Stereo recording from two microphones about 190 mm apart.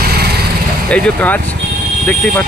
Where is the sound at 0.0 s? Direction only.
55° right (ahead or behind).